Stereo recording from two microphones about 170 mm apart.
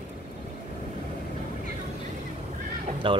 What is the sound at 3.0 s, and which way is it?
Speech, 30° right (ahead or behind).